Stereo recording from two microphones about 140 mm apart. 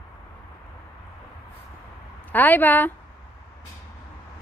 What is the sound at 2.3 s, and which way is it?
Speech, 15° left (ahead or behind).